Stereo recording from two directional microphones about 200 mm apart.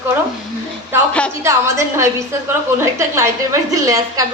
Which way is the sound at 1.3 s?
15° right (ahead or behind).